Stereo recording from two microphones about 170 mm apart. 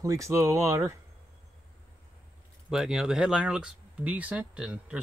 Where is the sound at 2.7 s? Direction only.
5° right (ahead or behind).